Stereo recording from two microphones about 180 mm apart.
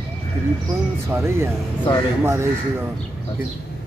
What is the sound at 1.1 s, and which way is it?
Speech, 15° right (ahead or behind).